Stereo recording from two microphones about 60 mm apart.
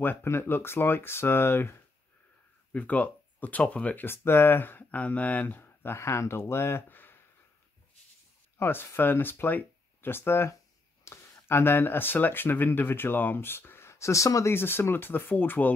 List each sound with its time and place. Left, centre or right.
0.0 s speech: left
2.7 s speech: left
4.0 s speech: left
8.5 s speech: left
11.1 s a sound: left
11.4 s speech: left
14.5 s speech: left